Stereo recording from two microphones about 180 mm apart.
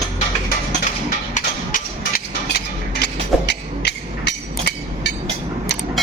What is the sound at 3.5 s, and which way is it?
Hammer, 70° left (ahead or behind).